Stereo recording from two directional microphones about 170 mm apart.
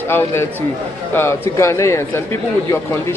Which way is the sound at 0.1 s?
15° left (ahead or behind).